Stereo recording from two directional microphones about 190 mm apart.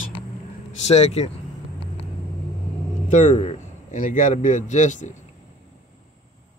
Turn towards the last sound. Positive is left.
turn(degrees=40)  # may be behind; listen again after turning